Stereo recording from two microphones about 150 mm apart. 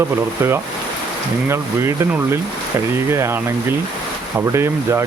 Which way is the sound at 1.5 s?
20° right (ahead or behind).